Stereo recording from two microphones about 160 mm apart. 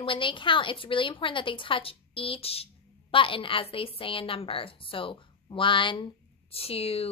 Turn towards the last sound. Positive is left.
turn(degrees=40)  # may be behind; listen again after turning